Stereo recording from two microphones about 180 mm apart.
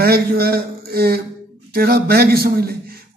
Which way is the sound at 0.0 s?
55° right (ahead or behind).